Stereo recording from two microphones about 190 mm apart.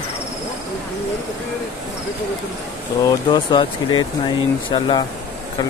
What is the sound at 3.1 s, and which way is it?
Speech, 25° left (ahead or behind).